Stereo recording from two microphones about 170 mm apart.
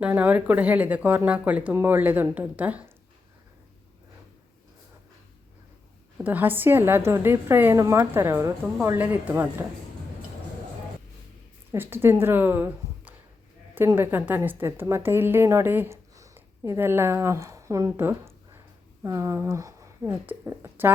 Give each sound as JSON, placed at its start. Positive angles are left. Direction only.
{"t": 0.0, "sound": "a woman's voice", "side_deg": -10}
{"t": 6.2, "sound": "a woman's voice", "side_deg": -10}
{"t": 11.7, "sound": "a woman's voice", "side_deg": -15}